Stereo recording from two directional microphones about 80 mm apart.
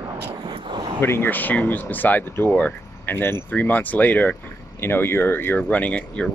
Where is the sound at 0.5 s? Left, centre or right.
Right.